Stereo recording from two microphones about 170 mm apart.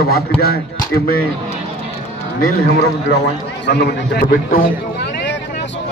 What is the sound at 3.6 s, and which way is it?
A man's voice, 75° left (ahead or behind).